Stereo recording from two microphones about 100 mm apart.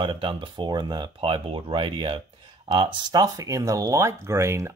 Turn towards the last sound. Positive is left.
turn(degrees=-30)  # may be behind; listen again after turning